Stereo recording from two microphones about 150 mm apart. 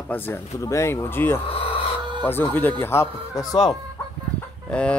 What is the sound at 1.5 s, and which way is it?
Filing, 40° left (ahead or behind).